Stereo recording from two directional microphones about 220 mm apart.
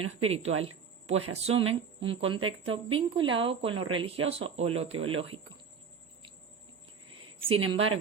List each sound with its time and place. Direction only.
0.3 s a woman's voice: 30° right (ahead or behind)
7.4 s a woman's voice: 25° right (ahead or behind)